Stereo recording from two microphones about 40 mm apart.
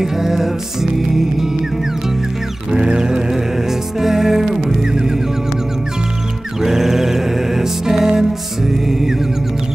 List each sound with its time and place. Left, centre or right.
0.0 s music: centre
2.7 s music: centre
6.6 s music: centre